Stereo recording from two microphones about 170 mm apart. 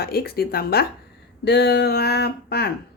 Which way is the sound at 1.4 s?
80° left.